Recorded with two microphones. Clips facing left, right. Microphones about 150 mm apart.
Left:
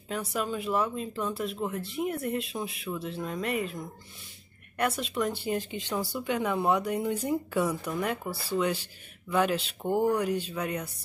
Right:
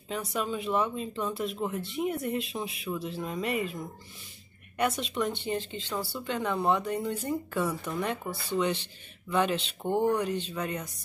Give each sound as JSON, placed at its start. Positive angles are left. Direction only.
{"t": 0.1, "sound": "speech", "side_deg": 0}
{"t": 4.7, "sound": "speech", "side_deg": 0}
{"t": 8.3, "sound": "speech", "side_deg": 30}
{"t": 8.5, "sound": "speech", "side_deg": 5}